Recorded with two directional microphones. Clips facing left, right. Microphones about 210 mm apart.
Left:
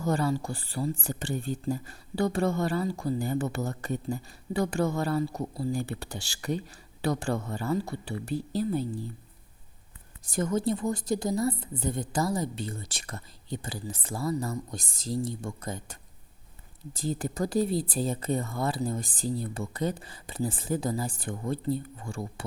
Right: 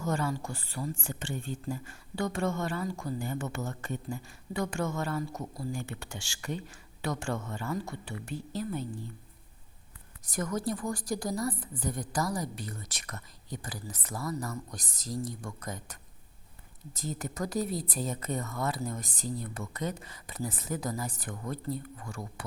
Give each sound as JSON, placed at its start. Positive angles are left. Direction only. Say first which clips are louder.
{"t": 0.0, "sound": "speech", "louder": "left 4 dB", "side_deg": 35}
{"t": 10.2, "sound": "a woman's voice", "louder": "left 5 dB", "side_deg": 25}